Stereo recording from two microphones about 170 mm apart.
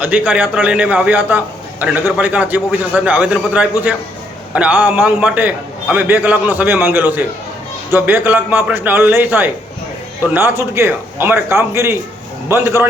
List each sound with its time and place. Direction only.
0.0 s a man's voice: 10° right (ahead or behind)